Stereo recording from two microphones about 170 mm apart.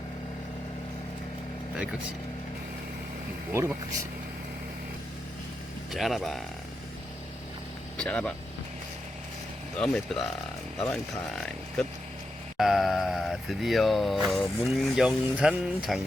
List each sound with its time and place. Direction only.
1.7 s speech: 5° right (ahead or behind)
3.5 s speech: 15° right (ahead or behind)
5.9 s speech: centre (ahead or behind)
7.9 s speech: 5° left (ahead or behind)
9.7 s speech: 5° left (ahead or behind)